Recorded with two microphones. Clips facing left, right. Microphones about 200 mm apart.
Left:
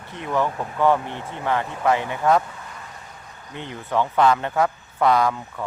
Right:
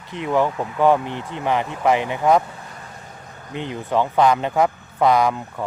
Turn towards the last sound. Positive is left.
turn(degrees=-15)  # may be behind; listen again after turning